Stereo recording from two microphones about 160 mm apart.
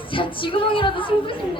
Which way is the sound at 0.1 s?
30° left (ahead or behind).